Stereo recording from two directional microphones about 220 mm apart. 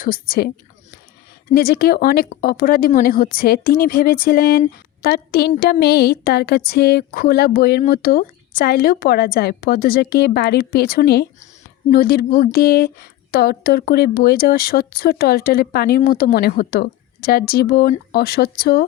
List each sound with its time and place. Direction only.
0.0 s a woman's voice: 40° left (ahead or behind)
1.5 s a woman's voice: 45° left (ahead or behind)